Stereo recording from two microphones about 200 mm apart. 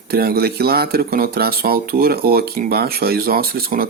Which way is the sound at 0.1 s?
50° right (ahead or behind).